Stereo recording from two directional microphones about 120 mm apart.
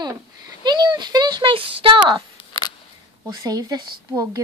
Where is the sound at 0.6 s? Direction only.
40° right (ahead or behind).